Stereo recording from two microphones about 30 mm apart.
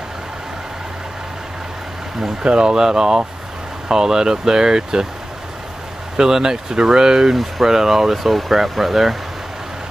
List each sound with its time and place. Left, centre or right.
2.4 s speech: right
2.7 s speech: right
6.1 s speech: centre